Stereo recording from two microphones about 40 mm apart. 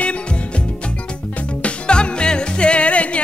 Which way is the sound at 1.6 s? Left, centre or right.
Left.